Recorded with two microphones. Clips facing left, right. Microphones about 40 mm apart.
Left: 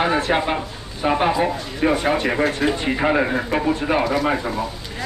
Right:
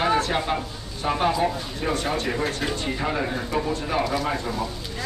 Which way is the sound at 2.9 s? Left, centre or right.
Left.